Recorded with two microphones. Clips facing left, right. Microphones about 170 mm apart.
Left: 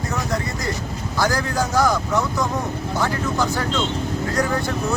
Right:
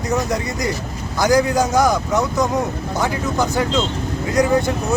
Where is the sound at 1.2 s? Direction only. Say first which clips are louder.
Right 6 dB; 20° right (ahead or behind).